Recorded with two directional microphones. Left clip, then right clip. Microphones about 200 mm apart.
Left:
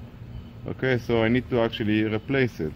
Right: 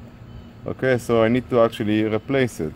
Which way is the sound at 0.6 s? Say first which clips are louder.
Right 5 dB; 40° right (ahead or behind).